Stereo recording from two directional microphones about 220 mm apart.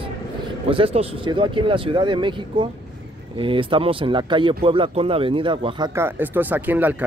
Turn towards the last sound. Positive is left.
turn(degrees=-10)  # may be behind; listen again after turning